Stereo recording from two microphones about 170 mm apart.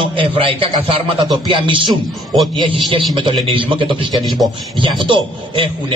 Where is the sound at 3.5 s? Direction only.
30° right (ahead or behind).